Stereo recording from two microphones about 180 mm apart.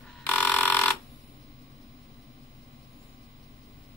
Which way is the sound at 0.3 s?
5° left (ahead or behind).